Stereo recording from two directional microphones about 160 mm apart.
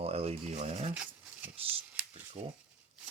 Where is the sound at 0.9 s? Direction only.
10° right (ahead or behind).